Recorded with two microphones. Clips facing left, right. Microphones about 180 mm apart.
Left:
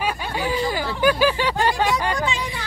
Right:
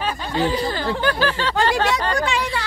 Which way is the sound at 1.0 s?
10° left (ahead or behind).